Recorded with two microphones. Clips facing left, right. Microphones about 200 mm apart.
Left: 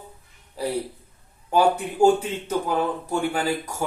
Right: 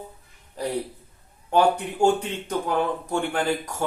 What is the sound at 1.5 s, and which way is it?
Speech, 5° left (ahead or behind).